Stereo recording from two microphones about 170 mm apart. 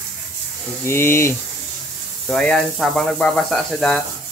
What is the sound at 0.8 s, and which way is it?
Speech, 15° left (ahead or behind).